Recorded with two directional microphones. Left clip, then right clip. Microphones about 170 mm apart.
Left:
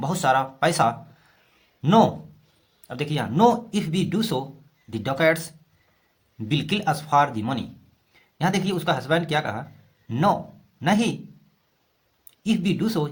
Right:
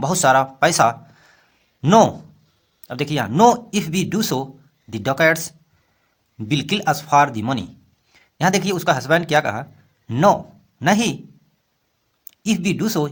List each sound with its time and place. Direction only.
0.0 s a man's voice: 45° right (ahead or behind)
12.2 s speech: 45° right (ahead or behind)